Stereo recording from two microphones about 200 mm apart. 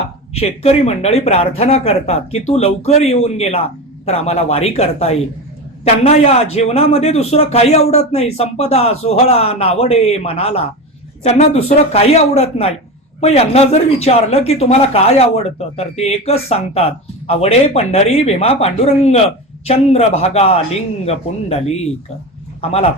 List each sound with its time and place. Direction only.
0.3 s speech: 30° left (ahead or behind)